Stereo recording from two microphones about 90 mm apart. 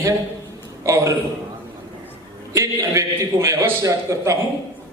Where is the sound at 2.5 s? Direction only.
35° right (ahead or behind).